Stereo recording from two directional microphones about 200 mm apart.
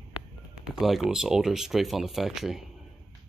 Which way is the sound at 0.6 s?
Centre (ahead or behind).